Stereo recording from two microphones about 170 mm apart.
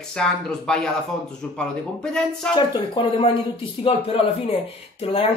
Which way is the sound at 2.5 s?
30° left (ahead or behind).